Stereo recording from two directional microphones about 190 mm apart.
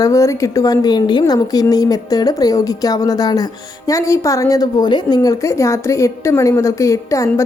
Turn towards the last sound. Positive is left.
turn(degrees=15)  # may be behind; listen again after turning